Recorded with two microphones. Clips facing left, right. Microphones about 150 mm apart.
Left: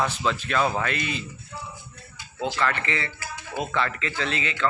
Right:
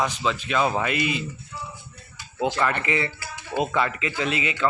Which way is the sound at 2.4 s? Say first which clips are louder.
Right 2 dB; 15° right (ahead or behind).